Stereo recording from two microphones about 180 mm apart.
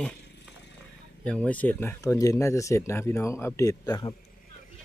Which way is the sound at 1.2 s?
5° left (ahead or behind).